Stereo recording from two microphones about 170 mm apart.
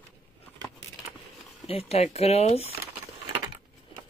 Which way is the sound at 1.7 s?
35° left (ahead or behind).